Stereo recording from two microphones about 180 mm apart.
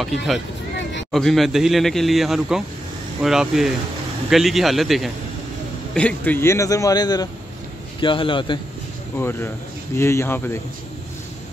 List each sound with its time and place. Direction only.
0.0 s a man's voice: centre (ahead or behind); by 8.5 s 25° left (ahead or behind)
9.1 s a man's voice: 10° left (ahead or behind)